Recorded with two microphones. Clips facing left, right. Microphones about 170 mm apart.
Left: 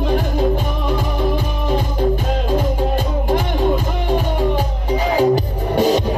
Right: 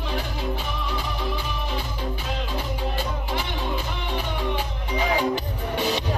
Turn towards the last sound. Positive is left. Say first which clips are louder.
# left 10 dB
turn(degrees=45)  # may be behind; listen again after turning